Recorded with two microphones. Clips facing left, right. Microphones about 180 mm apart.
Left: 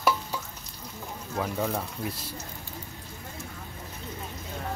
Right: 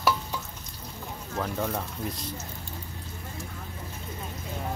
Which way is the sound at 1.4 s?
5° left (ahead or behind).